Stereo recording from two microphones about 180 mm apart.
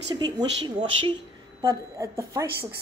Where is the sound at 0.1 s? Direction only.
25° right (ahead or behind).